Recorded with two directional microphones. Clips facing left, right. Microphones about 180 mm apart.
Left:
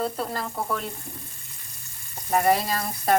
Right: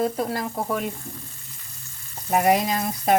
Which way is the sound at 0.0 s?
15° right (ahead or behind).